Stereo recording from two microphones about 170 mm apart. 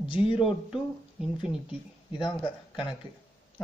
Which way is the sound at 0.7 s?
5° right (ahead or behind).